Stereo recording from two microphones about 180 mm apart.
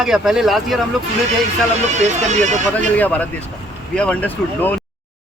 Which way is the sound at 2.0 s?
40° right (ahead or behind).